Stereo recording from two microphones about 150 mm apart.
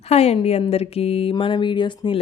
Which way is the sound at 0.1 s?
45° left (ahead or behind).